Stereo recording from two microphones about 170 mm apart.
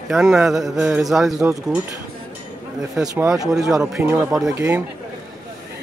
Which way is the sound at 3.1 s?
20° right (ahead or behind).